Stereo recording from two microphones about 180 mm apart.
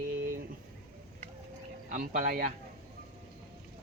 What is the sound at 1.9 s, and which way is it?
Speech, 45° right (ahead or behind).